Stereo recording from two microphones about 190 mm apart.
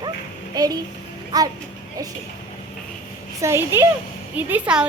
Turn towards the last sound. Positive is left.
turn(degrees=-5)  # may be behind; listen again after turning